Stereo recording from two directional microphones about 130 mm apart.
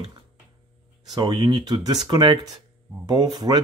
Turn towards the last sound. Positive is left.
turn(degrees=-30)  # may be behind; listen again after turning